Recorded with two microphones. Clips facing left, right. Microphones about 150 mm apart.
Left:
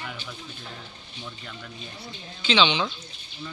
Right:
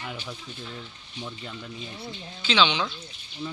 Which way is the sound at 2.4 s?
5° right (ahead or behind).